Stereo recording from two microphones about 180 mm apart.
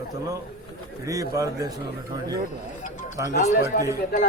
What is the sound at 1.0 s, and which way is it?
Speech, 20° right (ahead or behind).